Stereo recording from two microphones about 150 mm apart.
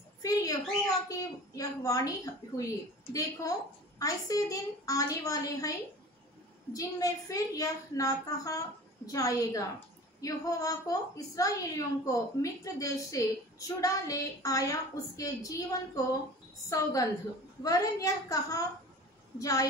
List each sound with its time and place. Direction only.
0.2 s a woman's voice: 25° left (ahead or behind)